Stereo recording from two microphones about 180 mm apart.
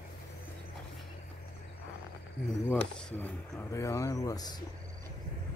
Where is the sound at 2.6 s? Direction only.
10° left (ahead or behind).